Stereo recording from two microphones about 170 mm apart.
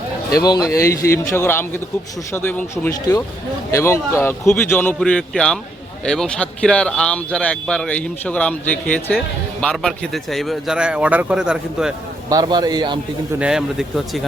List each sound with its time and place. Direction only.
0.3 s a man's voice: 20° left (ahead or behind); by 11.9 s 5° right (ahead or behind)
12.3 s a man's voice: 25° right (ahead or behind)
13.4 s a man's voice: 5° right (ahead or behind)